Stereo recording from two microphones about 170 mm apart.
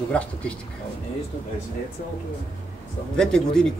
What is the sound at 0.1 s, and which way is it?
Speech, 5° left (ahead or behind).